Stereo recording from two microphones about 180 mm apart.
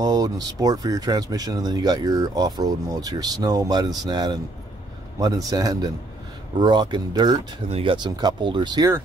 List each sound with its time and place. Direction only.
0.0 s speech: 20° right (ahead or behind)